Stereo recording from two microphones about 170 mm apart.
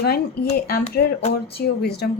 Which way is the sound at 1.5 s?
70° left (ahead or behind).